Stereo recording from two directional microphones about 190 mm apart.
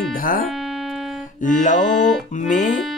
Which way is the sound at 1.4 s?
45° left (ahead or behind).